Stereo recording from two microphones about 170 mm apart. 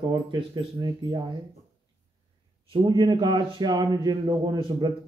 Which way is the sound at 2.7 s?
25° right (ahead or behind).